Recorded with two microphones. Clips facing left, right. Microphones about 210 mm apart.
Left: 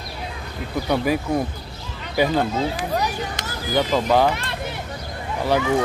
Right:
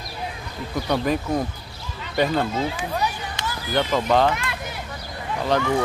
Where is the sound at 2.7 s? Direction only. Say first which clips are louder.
Left 2 dB; 40° left (ahead or behind).